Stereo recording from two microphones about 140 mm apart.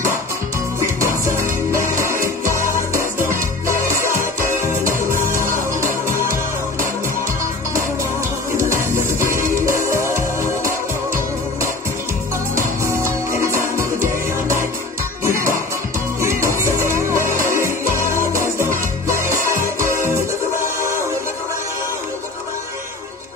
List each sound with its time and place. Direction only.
1.0 s music: 20° right (ahead or behind)
8.5 s music: 20° right (ahead or behind)
12.5 s music: 20° right (ahead or behind)